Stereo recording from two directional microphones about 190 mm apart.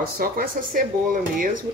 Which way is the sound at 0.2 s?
50° right (ahead or behind).